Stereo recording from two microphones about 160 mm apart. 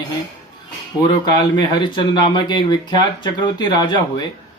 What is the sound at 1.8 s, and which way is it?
Speech, 30° left (ahead or behind).